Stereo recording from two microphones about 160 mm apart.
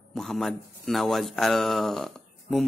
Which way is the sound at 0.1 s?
Centre (ahead or behind).